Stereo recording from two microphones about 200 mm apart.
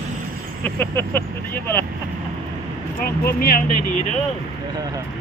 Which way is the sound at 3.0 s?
45° left (ahead or behind).